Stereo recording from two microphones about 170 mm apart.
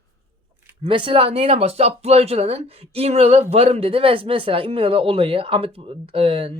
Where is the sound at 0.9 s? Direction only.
30° right (ahead or behind).